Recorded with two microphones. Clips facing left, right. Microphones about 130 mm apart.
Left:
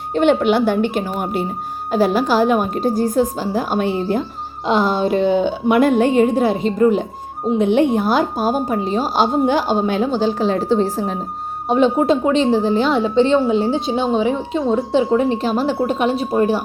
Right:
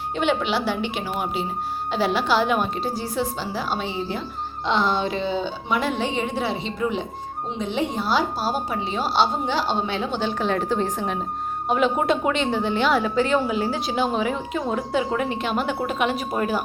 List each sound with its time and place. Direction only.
0.1 s a woman's voice: 50° left (ahead or behind)
4.6 s a woman's voice: 45° left (ahead or behind)
7.6 s a woman's voice: 55° left (ahead or behind); by 16.6 s 35° left (ahead or behind)